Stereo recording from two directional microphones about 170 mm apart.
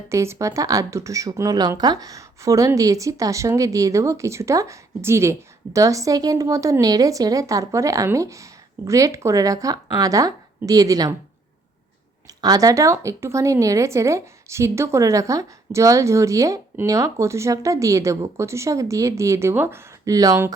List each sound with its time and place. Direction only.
0.1 s speech: 15° right (ahead or behind)
12.4 s a woman's voice: 20° right (ahead or behind)